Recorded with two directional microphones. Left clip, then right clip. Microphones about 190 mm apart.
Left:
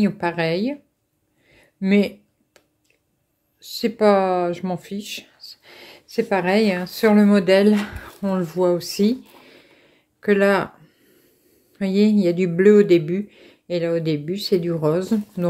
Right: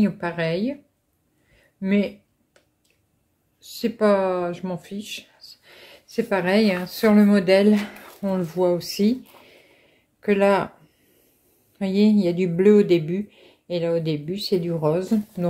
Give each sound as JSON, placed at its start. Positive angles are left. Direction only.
{"t": 0.0, "sound": "speech", "side_deg": 30}
{"t": 1.8, "sound": "a sound", "side_deg": 35}
{"t": 3.5, "sound": "speech", "side_deg": 25}
{"t": 11.8, "sound": "speech", "side_deg": 15}